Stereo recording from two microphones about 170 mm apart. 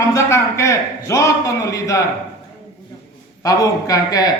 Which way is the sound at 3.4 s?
20° left (ahead or behind).